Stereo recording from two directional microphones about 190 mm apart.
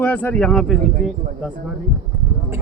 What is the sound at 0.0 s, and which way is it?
Speech, 10° left (ahead or behind).